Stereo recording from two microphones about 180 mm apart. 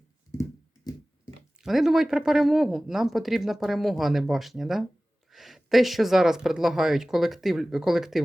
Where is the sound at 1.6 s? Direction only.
Centre (ahead or behind).